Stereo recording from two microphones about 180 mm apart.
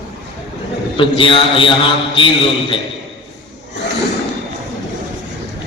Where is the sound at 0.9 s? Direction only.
30° left (ahead or behind).